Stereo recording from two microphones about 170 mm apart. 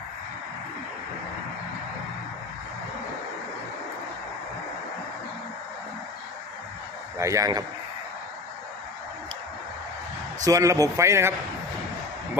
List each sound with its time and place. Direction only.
7.2 s speech: 20° right (ahead or behind)
10.4 s speech: 20° right (ahead or behind)